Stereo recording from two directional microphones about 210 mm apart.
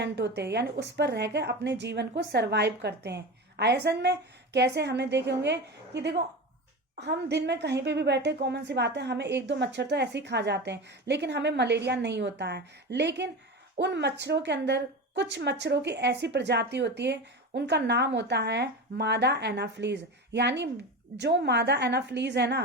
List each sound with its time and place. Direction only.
0.0 s a woman's voice: 50° right (ahead or behind)